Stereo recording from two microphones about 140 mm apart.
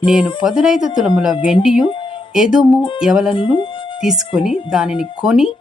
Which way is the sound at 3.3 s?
35° left (ahead or behind).